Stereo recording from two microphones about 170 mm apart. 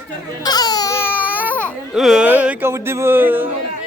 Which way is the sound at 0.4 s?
25° left (ahead or behind).